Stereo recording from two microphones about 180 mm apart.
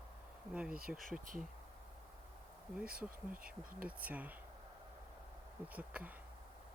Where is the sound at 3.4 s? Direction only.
50° right (ahead or behind).